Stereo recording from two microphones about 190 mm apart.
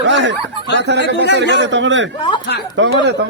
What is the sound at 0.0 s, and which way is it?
Snicker, 75° right (ahead or behind).